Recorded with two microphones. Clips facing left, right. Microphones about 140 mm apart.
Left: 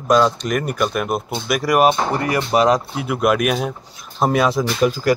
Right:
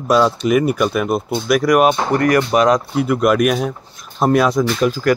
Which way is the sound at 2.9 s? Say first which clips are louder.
Right 3 dB; 5° left (ahead or behind).